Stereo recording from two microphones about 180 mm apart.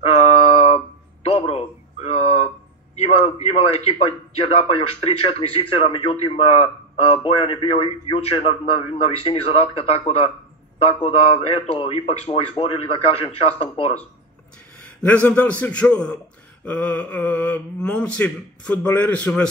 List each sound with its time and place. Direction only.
0.0 s a sound: 35° left (ahead or behind)
3.0 s a man's voice: 35° left (ahead or behind)
15.0 s speech: 10° left (ahead or behind)